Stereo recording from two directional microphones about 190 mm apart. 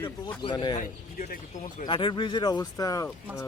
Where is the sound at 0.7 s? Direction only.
40° left (ahead or behind).